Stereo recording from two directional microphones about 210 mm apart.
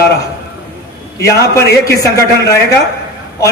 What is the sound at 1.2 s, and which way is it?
A man's voice, 15° left (ahead or behind).